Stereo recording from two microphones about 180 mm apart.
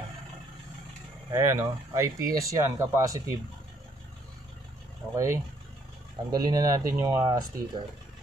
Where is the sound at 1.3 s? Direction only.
15° right (ahead or behind).